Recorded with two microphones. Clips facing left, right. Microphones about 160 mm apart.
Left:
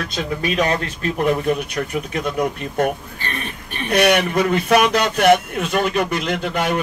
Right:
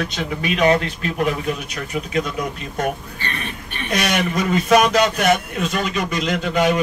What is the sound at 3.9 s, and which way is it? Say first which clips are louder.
A man's voice: left 5 dB; 60° left (ahead or behind).